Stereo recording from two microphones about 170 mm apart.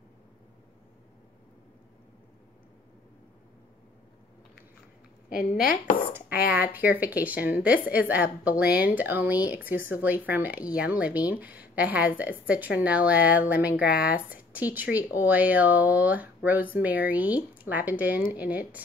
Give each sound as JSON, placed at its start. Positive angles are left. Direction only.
{"t": 5.3, "sound": "a woman's voice", "side_deg": 60}
{"t": 6.6, "sound": "speech", "side_deg": -10}